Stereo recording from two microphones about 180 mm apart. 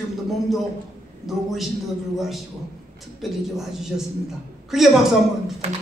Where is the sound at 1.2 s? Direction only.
Centre (ahead or behind).